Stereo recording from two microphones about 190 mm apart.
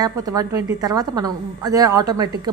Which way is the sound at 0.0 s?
20° right (ahead or behind).